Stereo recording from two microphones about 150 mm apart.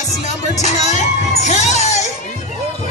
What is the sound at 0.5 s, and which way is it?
Children shouting, 50° left (ahead or behind).